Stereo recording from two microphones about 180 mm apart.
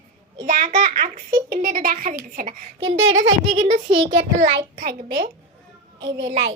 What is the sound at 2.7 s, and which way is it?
Speech, 90° right.